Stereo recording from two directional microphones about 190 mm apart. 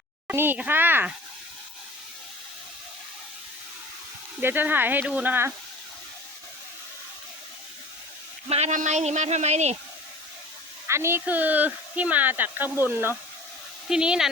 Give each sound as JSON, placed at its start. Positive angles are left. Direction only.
{"t": 0.3, "sound": "speech", "side_deg": -10}
{"t": 4.4, "sound": "speech", "side_deg": -10}
{"t": 8.4, "sound": "speech", "side_deg": -35}
{"t": 10.8, "sound": "speech", "side_deg": -15}